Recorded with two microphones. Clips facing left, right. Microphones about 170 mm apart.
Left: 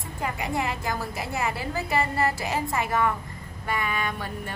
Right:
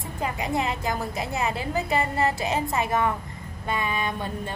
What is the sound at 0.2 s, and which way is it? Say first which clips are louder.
A woman's voice: right 2 dB; 20° right (ahead or behind).